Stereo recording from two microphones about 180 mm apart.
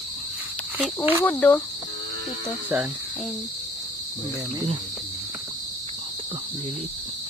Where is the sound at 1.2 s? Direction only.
10° left (ahead or behind).